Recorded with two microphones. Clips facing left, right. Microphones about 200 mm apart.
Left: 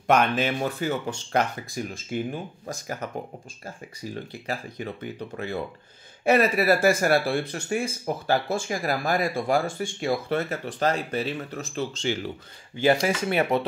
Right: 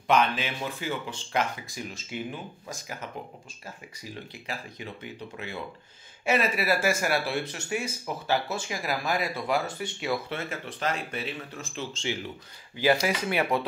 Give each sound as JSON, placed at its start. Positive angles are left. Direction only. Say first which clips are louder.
{"t": 0.0, "sound": "speech", "louder": "left 3 dB", "side_deg": 50}
{"t": 13.5, "sound": "speech", "louder": "left 3 dB", "side_deg": 25}